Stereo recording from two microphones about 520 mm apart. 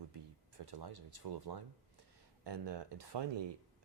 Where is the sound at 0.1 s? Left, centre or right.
Right.